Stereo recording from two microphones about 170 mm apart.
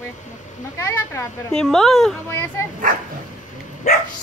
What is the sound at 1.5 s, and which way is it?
Speech, 5° left (ahead or behind).